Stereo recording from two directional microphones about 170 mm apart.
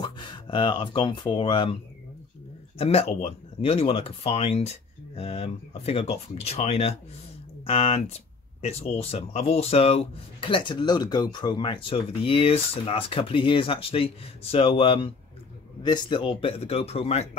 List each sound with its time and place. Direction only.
0.0 s speech: 25° left (ahead or behind)
2.8 s speech: 35° left (ahead or behind)